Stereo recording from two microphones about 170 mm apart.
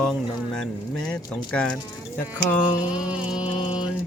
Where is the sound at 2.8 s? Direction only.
5° right (ahead or behind).